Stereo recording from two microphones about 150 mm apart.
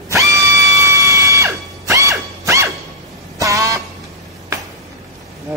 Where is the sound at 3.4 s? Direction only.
20° right (ahead or behind).